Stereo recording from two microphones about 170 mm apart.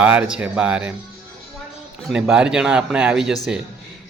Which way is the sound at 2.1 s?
5° right (ahead or behind).